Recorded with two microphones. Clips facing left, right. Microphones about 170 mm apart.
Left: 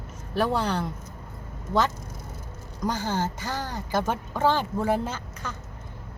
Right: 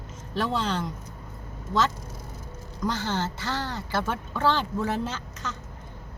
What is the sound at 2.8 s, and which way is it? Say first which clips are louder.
Speech: left 1 dB; 15° left (ahead or behind).